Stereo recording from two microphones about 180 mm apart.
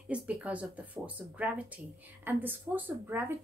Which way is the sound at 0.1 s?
5° right (ahead or behind).